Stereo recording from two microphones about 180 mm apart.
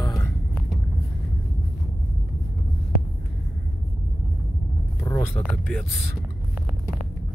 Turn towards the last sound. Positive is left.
turn(degrees=5)  # may be behind; listen again after turning